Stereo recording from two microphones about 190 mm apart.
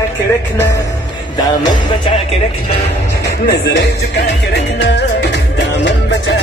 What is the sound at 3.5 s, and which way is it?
Music, 65° left (ahead or behind).